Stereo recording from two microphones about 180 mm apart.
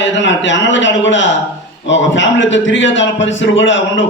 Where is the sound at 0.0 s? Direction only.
90° left.